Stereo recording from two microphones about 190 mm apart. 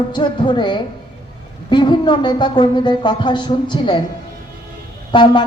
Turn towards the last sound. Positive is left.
turn(degrees=25)  # may be behind; listen again after turning